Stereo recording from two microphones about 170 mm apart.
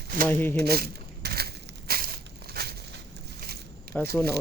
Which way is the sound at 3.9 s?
5° left (ahead or behind).